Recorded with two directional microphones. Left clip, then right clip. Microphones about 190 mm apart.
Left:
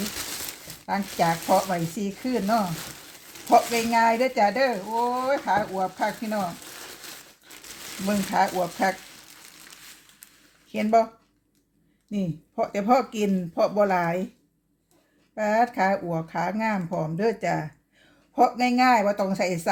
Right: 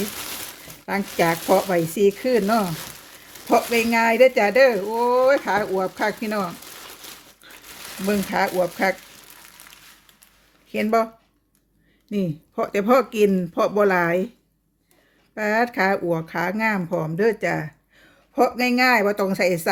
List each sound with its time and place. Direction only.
0.9 s speech: 45° right (ahead or behind)
8.0 s speech: 40° right (ahead or behind)
10.7 s speech: 35° right (ahead or behind)
12.1 s speech: 40° right (ahead or behind)
15.4 s speech: 40° right (ahead or behind)